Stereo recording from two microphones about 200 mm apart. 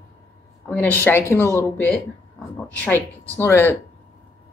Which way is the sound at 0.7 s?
10° left (ahead or behind).